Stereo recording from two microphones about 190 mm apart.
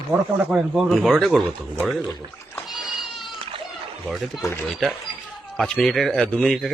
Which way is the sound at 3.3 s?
30° right (ahead or behind).